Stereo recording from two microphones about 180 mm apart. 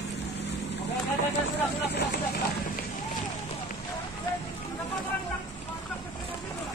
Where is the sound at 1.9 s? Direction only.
60° left (ahead or behind).